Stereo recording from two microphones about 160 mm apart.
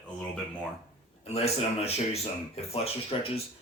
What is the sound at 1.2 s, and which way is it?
Speech, 40° left (ahead or behind).